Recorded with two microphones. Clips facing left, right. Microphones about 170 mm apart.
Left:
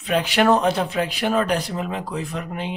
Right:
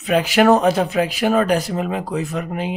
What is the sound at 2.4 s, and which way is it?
Speech, 5° right (ahead or behind).